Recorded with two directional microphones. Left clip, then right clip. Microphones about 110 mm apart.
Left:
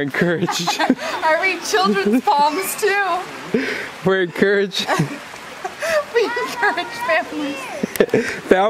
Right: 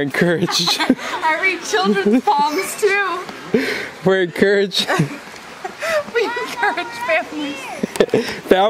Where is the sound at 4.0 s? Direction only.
20° right (ahead or behind).